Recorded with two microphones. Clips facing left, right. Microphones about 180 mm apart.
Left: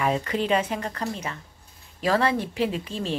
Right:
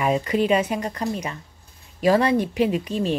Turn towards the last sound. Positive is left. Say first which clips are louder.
# right 6 dB
turn(degrees=-15)  # may be behind; listen again after turning